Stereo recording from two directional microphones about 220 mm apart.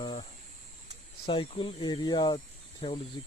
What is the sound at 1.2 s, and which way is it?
Speech, 20° left (ahead or behind).